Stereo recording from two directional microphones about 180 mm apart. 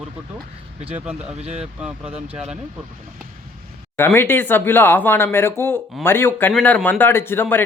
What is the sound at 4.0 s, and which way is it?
Speech, 10° left (ahead or behind).